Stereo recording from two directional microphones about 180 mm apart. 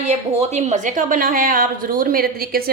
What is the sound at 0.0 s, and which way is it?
A woman's voice, 40° right (ahead or behind).